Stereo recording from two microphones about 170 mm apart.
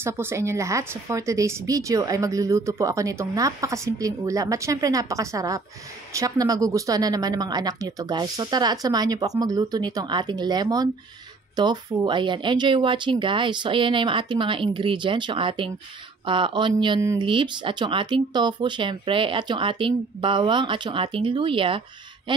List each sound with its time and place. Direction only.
0.0 s speech: 15° right (ahead or behind); by 21.8 s 30° right (ahead or behind)